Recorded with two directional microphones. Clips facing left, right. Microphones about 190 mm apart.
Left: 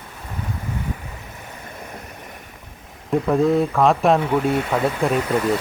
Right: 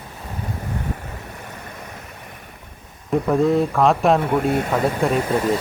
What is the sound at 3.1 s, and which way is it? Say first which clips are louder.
Speech: even; centre (ahead or behind).